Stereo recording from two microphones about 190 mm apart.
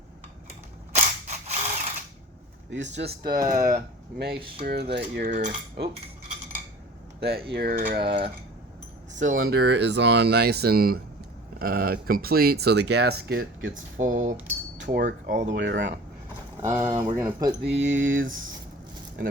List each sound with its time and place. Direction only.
0.9 s mechanisms: 35° right (ahead or behind)
2.6 s speech: 70° right (ahead or behind); by 3.4 s 55° right (ahead or behind)
3.5 s cutlery: 45° right (ahead or behind)
4.4 s speech: 30° right (ahead or behind)
4.6 s cutlery: 60° right (ahead or behind); by 5.5 s 40° right (ahead or behind)
7.2 s speech: 55° right (ahead or behind)
7.5 s cutlery: 50° right (ahead or behind)
9.2 s speech: 90° right; by 13.7 s 70° right (ahead or behind)
13.7 s cutlery: 45° right (ahead or behind)
15.4 s speech: 70° right (ahead or behind)
16.6 s speech: 15° right (ahead or behind)
17.6 s speech: 65° right (ahead or behind); by 18.3 s 90° right